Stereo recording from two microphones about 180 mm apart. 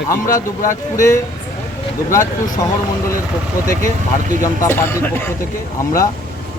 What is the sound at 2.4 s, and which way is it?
Speech, 20° left (ahead or behind).